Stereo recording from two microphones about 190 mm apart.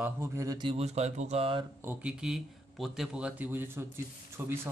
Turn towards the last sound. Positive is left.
turn(degrees=-15)  # may be behind; listen again after turning